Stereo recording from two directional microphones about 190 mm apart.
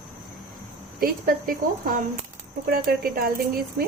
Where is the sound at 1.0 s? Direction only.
50° right (ahead or behind).